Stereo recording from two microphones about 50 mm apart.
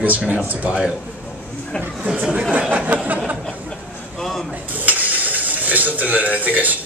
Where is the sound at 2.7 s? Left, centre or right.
Right.